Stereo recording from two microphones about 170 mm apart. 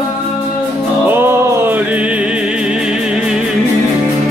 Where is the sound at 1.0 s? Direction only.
10° right (ahead or behind).